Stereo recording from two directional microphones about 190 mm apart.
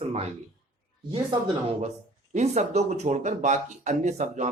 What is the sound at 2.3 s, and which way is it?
Speech, 35° right (ahead or behind).